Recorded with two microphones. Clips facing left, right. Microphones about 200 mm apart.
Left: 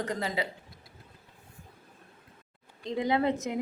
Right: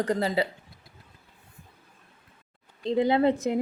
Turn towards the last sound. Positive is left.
turn(degrees=-30)  # may be behind; listen again after turning